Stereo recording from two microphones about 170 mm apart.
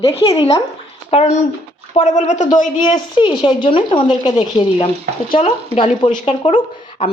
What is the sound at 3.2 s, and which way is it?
Speech, 30° left (ahead or behind).